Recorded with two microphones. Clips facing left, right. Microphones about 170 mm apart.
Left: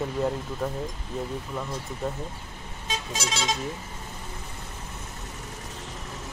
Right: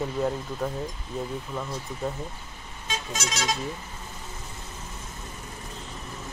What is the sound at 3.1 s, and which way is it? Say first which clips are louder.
Speech: left 1 dB; 30° left (ahead or behind).